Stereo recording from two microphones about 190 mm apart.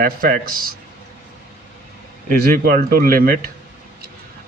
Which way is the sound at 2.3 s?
50° right (ahead or behind).